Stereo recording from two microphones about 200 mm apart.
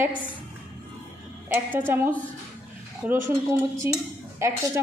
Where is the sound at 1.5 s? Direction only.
10° right (ahead or behind).